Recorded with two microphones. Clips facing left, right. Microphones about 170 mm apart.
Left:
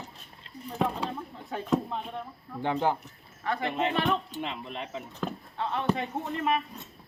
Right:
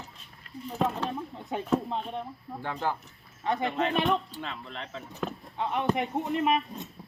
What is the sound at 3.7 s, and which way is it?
Speech, 20° left (ahead or behind).